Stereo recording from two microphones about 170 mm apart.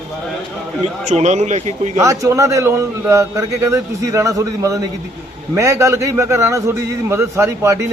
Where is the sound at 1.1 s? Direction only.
45° right (ahead or behind).